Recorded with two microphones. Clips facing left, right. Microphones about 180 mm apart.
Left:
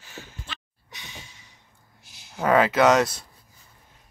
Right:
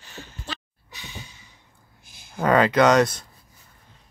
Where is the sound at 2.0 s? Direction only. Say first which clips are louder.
Right 1 dB; 50° right (ahead or behind).